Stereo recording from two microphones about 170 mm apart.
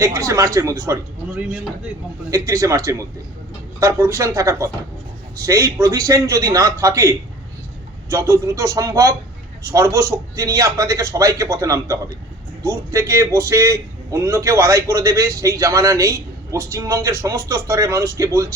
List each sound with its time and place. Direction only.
0.0 s a man's voice: 15° right (ahead or behind)
2.3 s a man's voice: 20° right (ahead or behind)